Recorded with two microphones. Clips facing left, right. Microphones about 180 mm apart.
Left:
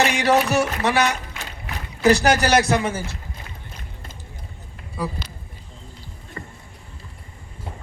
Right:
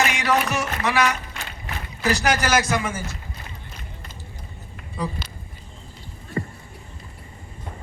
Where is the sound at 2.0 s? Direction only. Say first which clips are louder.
Left 5 dB; 35° left (ahead or behind).